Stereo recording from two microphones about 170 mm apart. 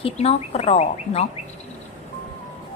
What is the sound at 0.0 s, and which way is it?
A woman's voice, 35° left (ahead or behind).